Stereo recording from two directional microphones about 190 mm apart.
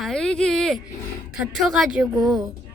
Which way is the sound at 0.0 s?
5° left (ahead or behind).